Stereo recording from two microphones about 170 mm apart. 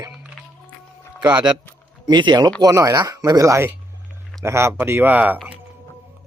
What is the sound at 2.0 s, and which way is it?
A man's voice, 25° right (ahead or behind).